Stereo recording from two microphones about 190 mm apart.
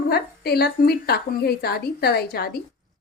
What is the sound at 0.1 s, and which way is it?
A woman's voice, 55° left (ahead or behind).